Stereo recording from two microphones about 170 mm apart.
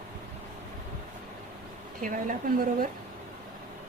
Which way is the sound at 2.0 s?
50° right (ahead or behind).